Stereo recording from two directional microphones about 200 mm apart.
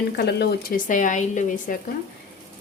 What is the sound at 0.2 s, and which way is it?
Speech, 55° left (ahead or behind).